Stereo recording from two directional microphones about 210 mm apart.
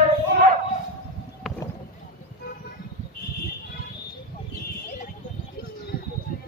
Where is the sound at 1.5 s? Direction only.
Centre (ahead or behind).